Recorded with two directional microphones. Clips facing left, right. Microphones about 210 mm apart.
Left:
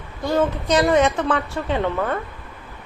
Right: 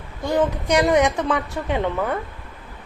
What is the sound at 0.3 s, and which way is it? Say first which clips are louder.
A woman's voice: even; 15° right (ahead or behind).